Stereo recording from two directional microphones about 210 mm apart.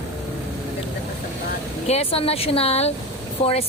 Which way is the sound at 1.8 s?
30° left (ahead or behind).